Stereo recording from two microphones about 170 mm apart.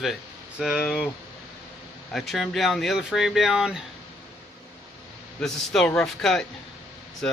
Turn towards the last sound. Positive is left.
turn(degrees=5)  # may be behind; listen again after turning